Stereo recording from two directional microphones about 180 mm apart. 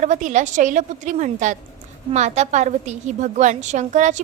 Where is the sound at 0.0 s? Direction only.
45° right (ahead or behind).